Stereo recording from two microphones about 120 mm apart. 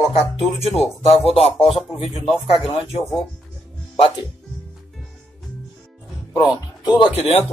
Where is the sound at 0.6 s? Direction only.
60° left (ahead or behind).